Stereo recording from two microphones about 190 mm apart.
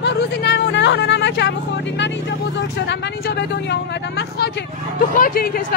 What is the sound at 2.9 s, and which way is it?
Speech, 65° left (ahead or behind).